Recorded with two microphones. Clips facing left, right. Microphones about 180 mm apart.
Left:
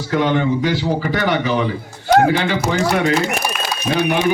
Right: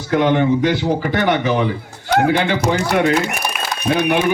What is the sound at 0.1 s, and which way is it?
A man's voice, 50° right (ahead or behind).